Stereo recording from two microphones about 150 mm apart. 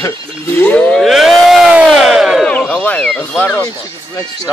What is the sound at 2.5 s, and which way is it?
Speech, 5° left (ahead or behind).